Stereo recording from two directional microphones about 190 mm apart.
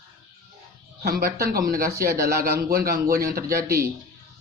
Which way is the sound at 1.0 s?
55° right (ahead or behind).